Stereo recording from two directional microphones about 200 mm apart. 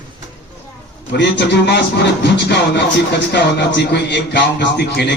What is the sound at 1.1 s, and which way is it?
Speech, 60° left (ahead or behind).